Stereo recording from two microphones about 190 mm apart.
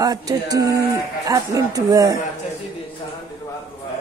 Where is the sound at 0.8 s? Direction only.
15° right (ahead or behind).